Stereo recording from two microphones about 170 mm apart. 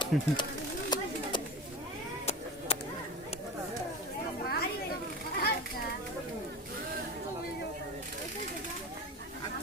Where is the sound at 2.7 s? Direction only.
35° left (ahead or behind).